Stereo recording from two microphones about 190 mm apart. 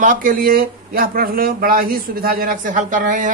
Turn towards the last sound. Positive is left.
turn(degrees=-45)  # may be behind; listen again after turning